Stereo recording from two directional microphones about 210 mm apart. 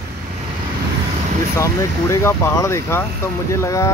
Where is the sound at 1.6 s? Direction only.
15° left (ahead or behind).